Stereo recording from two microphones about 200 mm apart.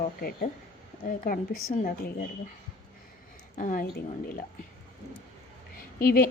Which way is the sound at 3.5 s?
40° left (ahead or behind).